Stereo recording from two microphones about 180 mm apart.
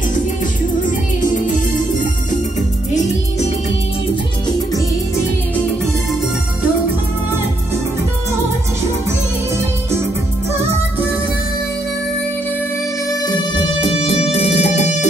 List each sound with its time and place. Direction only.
2.9 s music: 40° left (ahead or behind)
13.4 s music: 25° left (ahead or behind)